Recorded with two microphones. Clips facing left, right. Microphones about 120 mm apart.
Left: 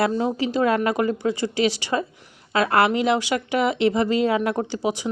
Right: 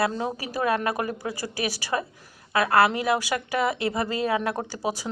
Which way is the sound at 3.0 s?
20° left (ahead or behind).